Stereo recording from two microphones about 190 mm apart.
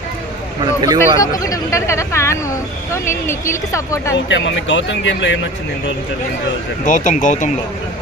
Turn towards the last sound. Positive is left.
turn(degrees=40)  # may be behind; listen again after turning